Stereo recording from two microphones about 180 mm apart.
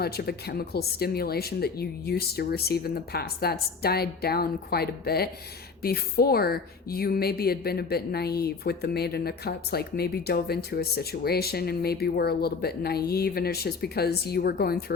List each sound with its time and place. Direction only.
0.0 s speech: 60° left (ahead or behind)